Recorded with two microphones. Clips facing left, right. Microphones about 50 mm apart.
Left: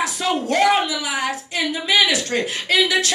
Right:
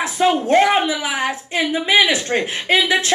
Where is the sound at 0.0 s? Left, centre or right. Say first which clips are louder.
Right 5 dB; right.